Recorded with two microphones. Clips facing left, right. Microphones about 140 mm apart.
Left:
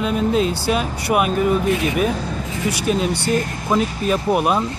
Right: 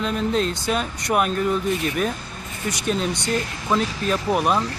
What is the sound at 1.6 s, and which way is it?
Speech, 90° left.